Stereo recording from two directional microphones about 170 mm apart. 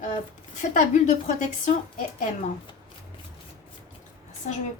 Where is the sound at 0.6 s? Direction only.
50° left (ahead or behind).